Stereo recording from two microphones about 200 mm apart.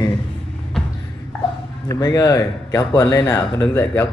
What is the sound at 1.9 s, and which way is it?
Speech, 20° left (ahead or behind).